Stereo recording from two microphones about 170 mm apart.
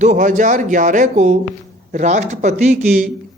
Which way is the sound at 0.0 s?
45° right (ahead or behind).